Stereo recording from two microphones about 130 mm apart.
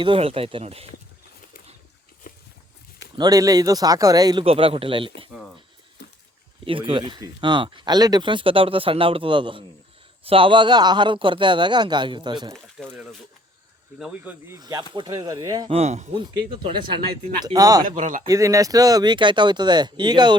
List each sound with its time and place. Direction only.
0.0 s speech: 45° right (ahead or behind)
2.3 s a sound: 90° left
3.2 s speech: 25° right (ahead or behind)
4.4 s speech: 45° right (ahead or behind)
6.7 s speech: 45° right (ahead or behind)
12.8 s speech: centre (ahead or behind)
14.0 s speech: 10° right (ahead or behind)
14.5 s speech: 30° right (ahead or behind)
15.7 s speech: 60° right (ahead or behind)
16.1 s speech: 40° right (ahead or behind)
17.4 s speech: 30° right (ahead or behind)
17.8 s speech: 75° right (ahead or behind)
18.3 s speech: 25° right (ahead or behind)